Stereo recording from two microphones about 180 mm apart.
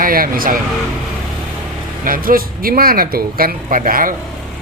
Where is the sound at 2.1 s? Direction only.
50° right (ahead or behind).